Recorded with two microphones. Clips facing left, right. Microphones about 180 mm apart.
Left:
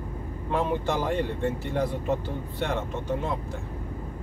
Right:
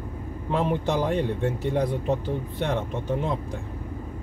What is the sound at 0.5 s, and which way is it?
Speech, 20° right (ahead or behind).